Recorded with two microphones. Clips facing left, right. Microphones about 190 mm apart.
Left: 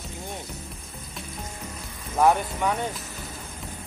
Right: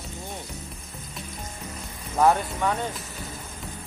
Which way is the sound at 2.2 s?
10° left (ahead or behind).